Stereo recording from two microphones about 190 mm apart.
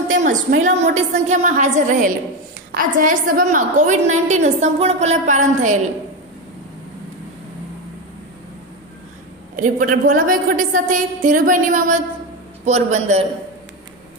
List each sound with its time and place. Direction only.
0.1 s a sound: 45° right (ahead or behind)
0.6 s a woman's voice: 40° right (ahead or behind)
9.6 s a woman's voice: 45° right (ahead or behind)